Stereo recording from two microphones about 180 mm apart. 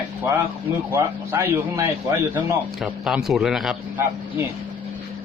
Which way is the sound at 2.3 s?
5° right (ahead or behind).